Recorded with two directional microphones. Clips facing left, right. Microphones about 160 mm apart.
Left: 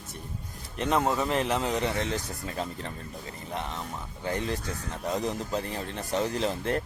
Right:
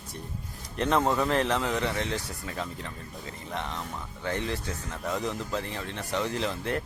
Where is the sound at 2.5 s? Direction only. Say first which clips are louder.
Left 2 dB; 35° left (ahead or behind).